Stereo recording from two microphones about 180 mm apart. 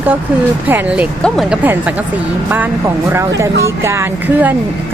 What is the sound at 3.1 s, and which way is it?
Speech, 15° right (ahead or behind).